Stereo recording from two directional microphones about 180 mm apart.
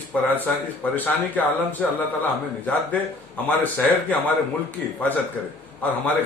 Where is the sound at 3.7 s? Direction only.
10° left (ahead or behind).